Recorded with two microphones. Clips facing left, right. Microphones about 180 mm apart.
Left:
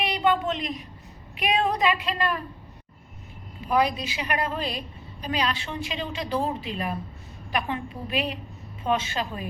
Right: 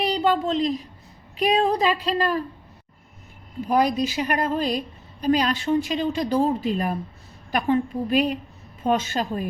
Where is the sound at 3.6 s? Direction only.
45° right (ahead or behind).